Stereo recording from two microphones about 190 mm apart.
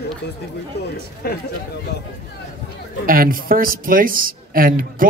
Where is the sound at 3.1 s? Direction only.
50° right (ahead or behind).